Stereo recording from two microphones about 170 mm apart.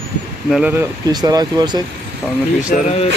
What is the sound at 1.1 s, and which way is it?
Speech, 25° right (ahead or behind).